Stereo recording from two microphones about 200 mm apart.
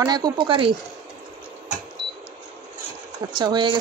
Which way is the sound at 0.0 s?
20° right (ahead or behind).